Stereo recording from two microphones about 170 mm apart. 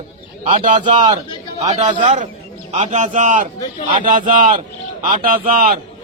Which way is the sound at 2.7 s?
40° right (ahead or behind).